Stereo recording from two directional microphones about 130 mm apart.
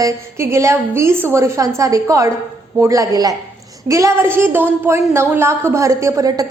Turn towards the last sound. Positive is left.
turn(degrees=-25)  # may be behind; listen again after turning